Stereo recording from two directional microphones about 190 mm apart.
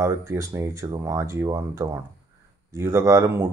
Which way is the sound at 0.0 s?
15° right (ahead or behind).